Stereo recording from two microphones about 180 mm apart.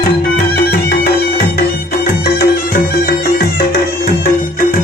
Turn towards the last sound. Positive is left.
turn(degrees=50)  # may be behind; listen again after turning